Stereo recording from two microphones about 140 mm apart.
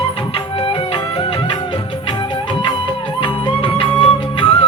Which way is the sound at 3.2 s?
35° left (ahead or behind).